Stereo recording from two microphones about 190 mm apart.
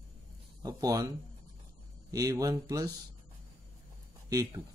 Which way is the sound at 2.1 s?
20° right (ahead or behind).